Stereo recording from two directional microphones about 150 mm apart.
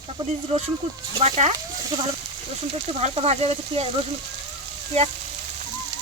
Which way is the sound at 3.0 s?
45° right (ahead or behind).